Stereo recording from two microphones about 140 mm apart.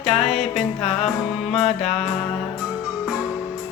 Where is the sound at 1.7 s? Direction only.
50° left (ahead or behind).